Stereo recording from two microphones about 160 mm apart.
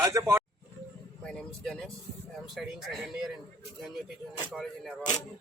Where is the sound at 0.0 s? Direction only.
20° right (ahead or behind).